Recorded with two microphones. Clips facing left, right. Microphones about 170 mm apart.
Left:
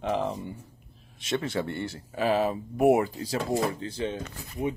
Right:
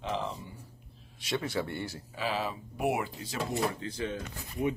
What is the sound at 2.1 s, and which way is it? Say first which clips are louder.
Speech: left 9 dB; 50° left (ahead or behind).